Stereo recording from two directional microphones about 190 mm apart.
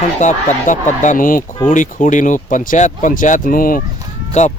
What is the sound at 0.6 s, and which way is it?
Speech, 40° left (ahead or behind).